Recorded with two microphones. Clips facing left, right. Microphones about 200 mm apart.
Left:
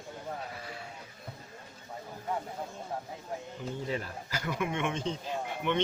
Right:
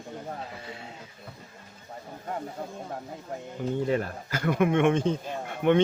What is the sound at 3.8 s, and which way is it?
Speech, 55° right (ahead or behind).